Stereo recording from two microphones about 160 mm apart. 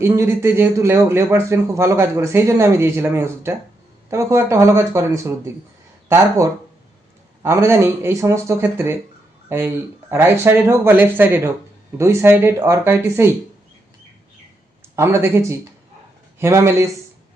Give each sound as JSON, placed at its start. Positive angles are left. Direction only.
{"t": 0.0, "sound": "a man's voice", "side_deg": -15}
{"t": 14.9, "sound": "a man's voice", "side_deg": -15}